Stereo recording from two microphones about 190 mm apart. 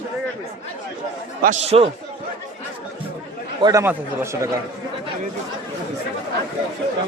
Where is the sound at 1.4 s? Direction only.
40° right (ahead or behind).